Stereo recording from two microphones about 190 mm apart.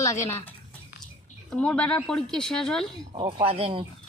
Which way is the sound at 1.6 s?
5° left (ahead or behind).